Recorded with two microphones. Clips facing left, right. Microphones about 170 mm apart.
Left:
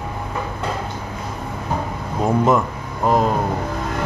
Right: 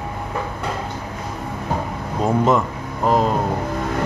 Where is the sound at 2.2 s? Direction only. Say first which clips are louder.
Even; centre (ahead or behind).